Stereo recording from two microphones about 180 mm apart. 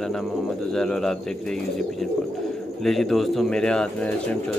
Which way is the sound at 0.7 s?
5° left (ahead or behind).